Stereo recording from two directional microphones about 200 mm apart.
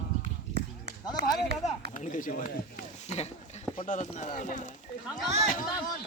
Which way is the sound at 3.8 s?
40° left (ahead or behind).